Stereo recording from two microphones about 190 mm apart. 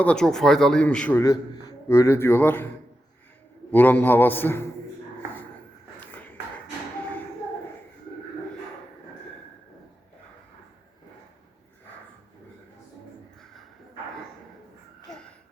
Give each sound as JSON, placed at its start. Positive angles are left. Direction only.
{"t": 0.0, "sound": "a man's voice", "side_deg": 5}
{"t": 3.7, "sound": "a man's voice", "side_deg": 10}
{"t": 6.0, "sound": "a sound", "side_deg": 10}